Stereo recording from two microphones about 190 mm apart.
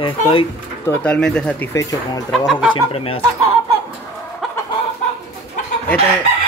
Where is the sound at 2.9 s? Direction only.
30° left (ahead or behind).